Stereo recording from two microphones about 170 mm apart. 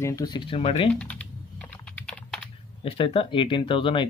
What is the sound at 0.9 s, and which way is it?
Typing, 10° left (ahead or behind).